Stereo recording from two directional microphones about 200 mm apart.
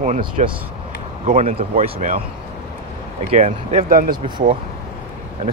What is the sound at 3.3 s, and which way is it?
Speech, 35° right (ahead or behind).